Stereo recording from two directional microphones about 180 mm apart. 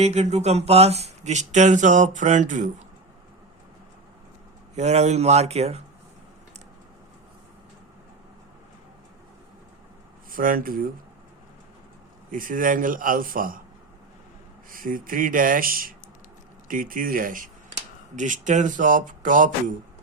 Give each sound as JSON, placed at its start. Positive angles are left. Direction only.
{"t": 0.0, "sound": "speech", "side_deg": -40}
{"t": 4.7, "sound": "speech", "side_deg": -40}
{"t": 10.3, "sound": "speech", "side_deg": -50}
{"t": 12.3, "sound": "speech", "side_deg": -50}
{"t": 14.7, "sound": "speech", "side_deg": -50}